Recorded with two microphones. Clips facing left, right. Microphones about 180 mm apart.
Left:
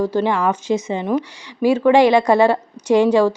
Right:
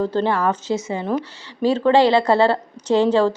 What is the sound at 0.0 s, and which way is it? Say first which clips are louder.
A woman's voice: left 1 dB; 10° left (ahead or behind).